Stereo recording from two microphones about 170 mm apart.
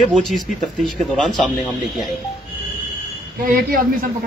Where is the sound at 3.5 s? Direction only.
55° right (ahead or behind).